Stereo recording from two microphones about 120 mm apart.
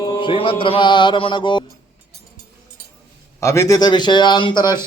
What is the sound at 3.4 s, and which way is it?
Speech, 25° left (ahead or behind).